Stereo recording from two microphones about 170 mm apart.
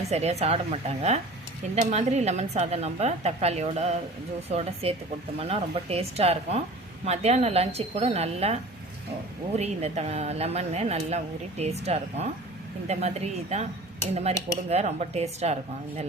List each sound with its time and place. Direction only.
0.1 s speech: 40° right (ahead or behind)